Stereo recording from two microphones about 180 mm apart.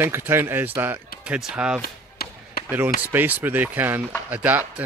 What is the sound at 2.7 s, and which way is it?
Speech, 10° right (ahead or behind).